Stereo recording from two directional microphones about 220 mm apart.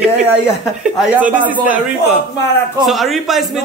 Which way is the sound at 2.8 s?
Centre (ahead or behind).